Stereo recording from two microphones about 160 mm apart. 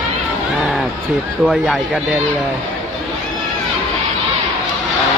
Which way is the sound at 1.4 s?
Centre (ahead or behind).